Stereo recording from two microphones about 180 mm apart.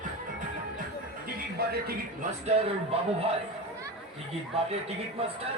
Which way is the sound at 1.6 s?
60° right (ahead or behind).